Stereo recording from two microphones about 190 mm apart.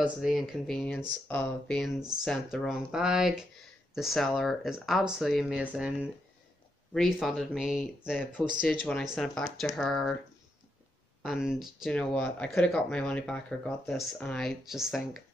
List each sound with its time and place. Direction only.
0.0 s speech: centre (ahead or behind)
11.2 s speech: 5° right (ahead or behind)